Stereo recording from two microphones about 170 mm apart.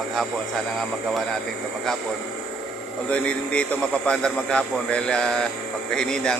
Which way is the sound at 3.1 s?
5° left (ahead or behind).